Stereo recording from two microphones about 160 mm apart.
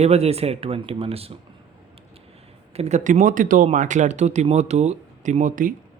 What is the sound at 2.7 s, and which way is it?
Speech, 45° right (ahead or behind).